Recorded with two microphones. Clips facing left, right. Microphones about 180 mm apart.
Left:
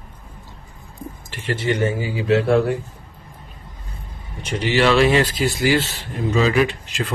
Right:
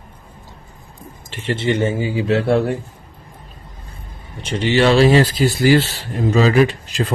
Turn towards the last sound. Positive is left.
turn(degrees=-40)  # may be behind; listen again after turning